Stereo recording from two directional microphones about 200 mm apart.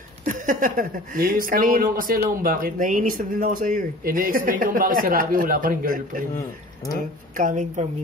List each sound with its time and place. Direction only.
0.2 s speech: 40° right (ahead or behind)
7.3 s a woman's voice: 40° right (ahead or behind)